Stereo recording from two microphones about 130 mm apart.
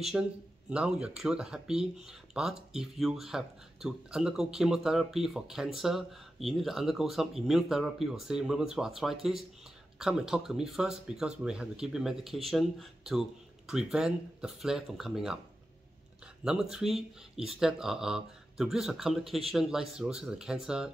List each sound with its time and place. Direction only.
0.1 s speech: 5° right (ahead or behind)
16.4 s speech: 5° right (ahead or behind)